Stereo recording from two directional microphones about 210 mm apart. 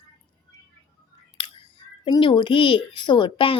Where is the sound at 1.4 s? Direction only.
25° left (ahead or behind).